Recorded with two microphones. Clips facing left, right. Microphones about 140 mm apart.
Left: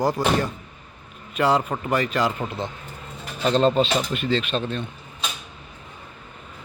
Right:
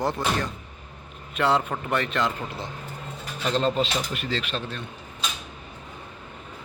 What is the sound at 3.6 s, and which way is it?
Speech, 25° left (ahead or behind).